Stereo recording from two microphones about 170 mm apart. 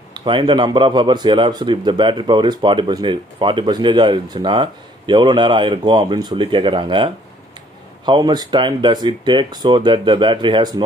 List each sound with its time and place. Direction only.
0.1 s a man's voice: 25° right (ahead or behind)